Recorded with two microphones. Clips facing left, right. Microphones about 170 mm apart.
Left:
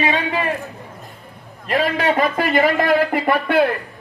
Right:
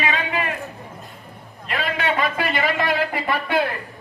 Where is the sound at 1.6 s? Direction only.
40° left (ahead or behind).